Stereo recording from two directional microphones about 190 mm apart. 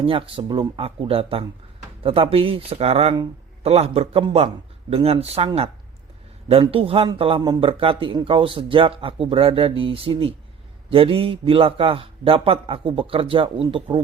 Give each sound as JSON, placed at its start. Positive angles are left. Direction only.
{"t": 0.0, "sound": "a man's voice", "side_deg": -30}